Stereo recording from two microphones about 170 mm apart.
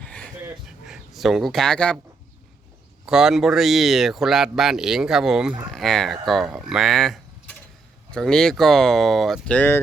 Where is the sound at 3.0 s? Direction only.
5° right (ahead or behind).